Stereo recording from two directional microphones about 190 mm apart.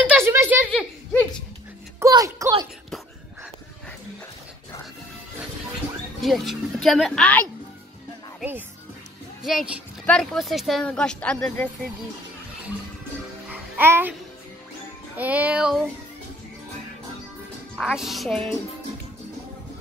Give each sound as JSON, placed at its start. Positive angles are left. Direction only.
{"t": 0.0, "sound": "a sound", "side_deg": -10}
{"t": 0.7, "sound": "a sound", "side_deg": 5}
{"t": 2.0, "sound": "speech", "side_deg": -15}
{"t": 6.2, "sound": "speech", "side_deg": 0}
{"t": 8.4, "sound": "speech", "side_deg": -10}
{"t": 13.5, "sound": "music", "side_deg": -10}
{"t": 15.1, "sound": "music", "side_deg": -10}
{"t": 17.7, "sound": "speech", "side_deg": 0}